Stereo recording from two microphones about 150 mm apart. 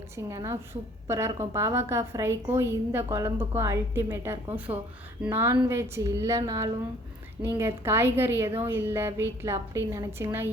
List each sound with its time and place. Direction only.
0.2 s a woman's voice: 20° right (ahead or behind)